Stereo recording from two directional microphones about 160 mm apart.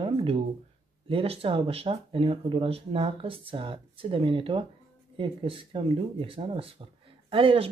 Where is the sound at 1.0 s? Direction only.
35° right (ahead or behind).